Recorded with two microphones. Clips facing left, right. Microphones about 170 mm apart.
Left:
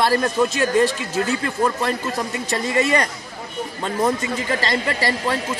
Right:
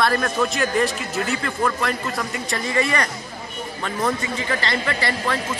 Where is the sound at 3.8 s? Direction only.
25° left (ahead or behind).